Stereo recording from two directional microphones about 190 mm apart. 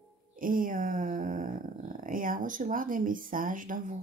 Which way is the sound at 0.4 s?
45° right (ahead or behind).